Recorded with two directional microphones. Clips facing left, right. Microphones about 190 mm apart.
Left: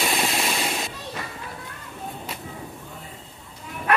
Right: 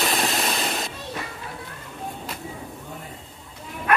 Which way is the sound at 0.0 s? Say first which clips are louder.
Right 1 dB; centre (ahead or behind).